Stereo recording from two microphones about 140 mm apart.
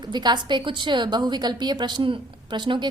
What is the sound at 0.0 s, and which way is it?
A woman's voice, 30° right (ahead or behind).